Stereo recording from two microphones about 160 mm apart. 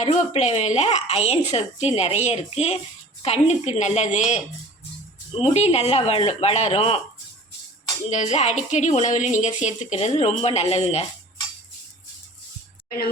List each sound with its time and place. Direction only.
0.0 s a woman's voice: 45° left (ahead or behind)
5.4 s speech: 40° left (ahead or behind)
8.1 s a woman's voice: 45° left (ahead or behind)